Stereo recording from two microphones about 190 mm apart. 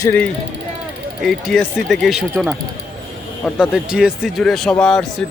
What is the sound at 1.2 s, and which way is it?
A man's voice, centre (ahead or behind).